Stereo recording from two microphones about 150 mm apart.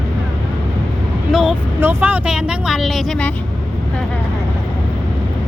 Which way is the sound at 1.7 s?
10° right (ahead or behind).